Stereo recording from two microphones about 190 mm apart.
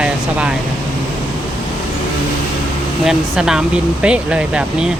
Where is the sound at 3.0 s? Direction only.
5° right (ahead or behind).